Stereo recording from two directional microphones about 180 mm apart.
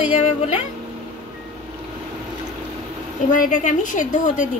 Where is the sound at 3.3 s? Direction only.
50° left (ahead or behind).